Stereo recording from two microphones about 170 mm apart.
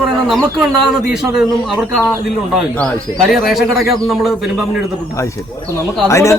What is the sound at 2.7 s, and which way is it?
Speech, 5° left (ahead or behind).